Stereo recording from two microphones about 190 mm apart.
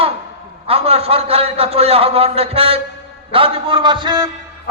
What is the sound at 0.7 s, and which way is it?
A man's voice, 30° right (ahead or behind).